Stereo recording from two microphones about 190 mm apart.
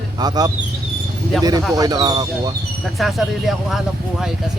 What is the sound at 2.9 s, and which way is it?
Speech, centre (ahead or behind).